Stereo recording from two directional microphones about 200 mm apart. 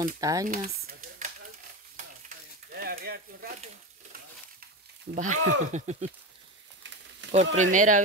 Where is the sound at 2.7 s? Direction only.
50° right (ahead or behind).